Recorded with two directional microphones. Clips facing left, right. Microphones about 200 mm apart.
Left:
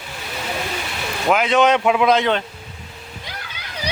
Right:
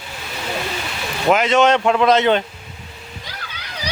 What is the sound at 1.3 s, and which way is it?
Speech, centre (ahead or behind).